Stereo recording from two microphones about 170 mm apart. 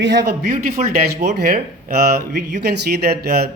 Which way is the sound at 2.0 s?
70° right (ahead or behind).